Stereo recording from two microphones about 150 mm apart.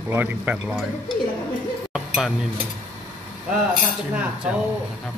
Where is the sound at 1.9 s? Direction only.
5° right (ahead or behind).